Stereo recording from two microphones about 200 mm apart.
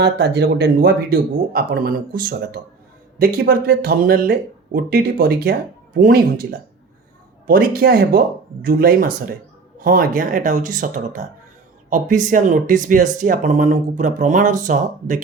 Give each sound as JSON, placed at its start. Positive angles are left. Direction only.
{"t": 0.0, "sound": "speech", "side_deg": -55}
{"t": 7.4, "sound": "speech", "side_deg": -45}